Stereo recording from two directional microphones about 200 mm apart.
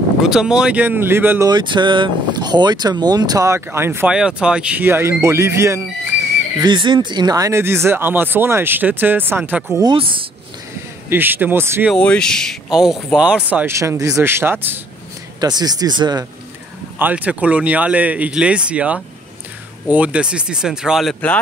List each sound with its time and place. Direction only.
0.2 s speech: 5° right (ahead or behind)
1.5 s speech: 20° right (ahead or behind)
6.6 s speech: 25° right (ahead or behind)
9.9 s speech: 25° right (ahead or behind)
11.1 s speech: 10° right (ahead or behind)
11.9 s speech: 5° left (ahead or behind); by 16.3 s 20° right (ahead or behind)
17.0 s speech: 5° right (ahead or behind)